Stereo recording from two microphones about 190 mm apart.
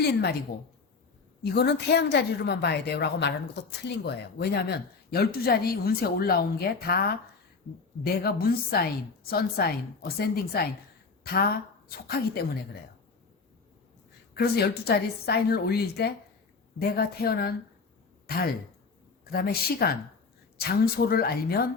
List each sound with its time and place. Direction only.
0.0 s a woman's voice: 60° left (ahead or behind)
1.4 s a woman's voice: 60° left (ahead or behind)
14.3 s a woman's voice: 55° left (ahead or behind)